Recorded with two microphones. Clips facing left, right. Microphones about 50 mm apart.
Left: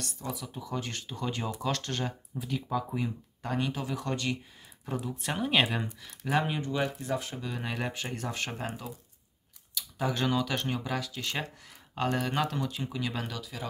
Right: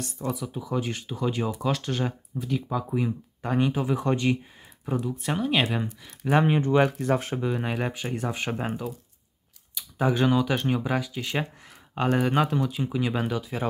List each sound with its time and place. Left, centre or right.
0.3 s speech: centre
5.0 s speech: centre
6.0 s speech: right
7.4 s speech: right